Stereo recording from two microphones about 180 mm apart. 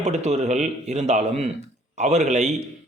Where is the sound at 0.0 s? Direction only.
40° right (ahead or behind).